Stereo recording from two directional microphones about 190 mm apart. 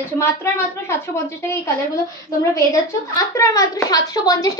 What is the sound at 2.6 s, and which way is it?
A woman's voice, 15° left (ahead or behind).